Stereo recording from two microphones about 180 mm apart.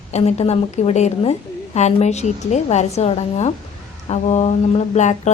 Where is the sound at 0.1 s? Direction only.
35° left (ahead or behind).